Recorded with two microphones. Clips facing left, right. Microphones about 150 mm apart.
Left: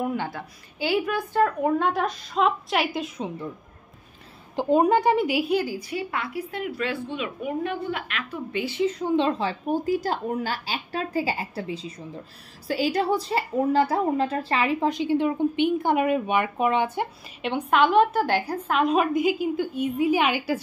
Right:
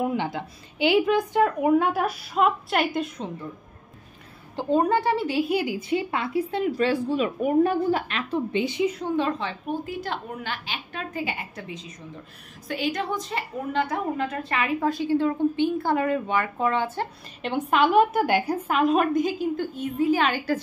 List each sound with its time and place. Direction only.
0.0 s a woman's voice: 20° right (ahead or behind); by 3.3 s centre (ahead or behind)
4.6 s a woman's voice: 15° left (ahead or behind)
5.5 s a woman's voice: 15° right (ahead or behind)
5.8 s a woman's voice: 25° right (ahead or behind)
9.1 s a woman's voice: 25° left (ahead or behind)
9.5 s a woman's voice: 40° left (ahead or behind)
12.6 s a woman's voice: 35° left (ahead or behind); by 17.1 s 15° left (ahead or behind)
17.4 s a woman's voice: centre (ahead or behind)
18.8 s a woman's voice: centre (ahead or behind)
19.1 s a woman's voice: 10° left (ahead or behind)